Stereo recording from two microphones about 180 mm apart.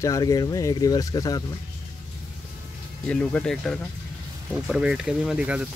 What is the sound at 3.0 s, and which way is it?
Speech, 5° left (ahead or behind).